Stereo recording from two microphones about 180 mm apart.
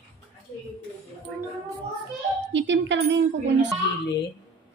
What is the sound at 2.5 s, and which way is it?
Speech, 85° right.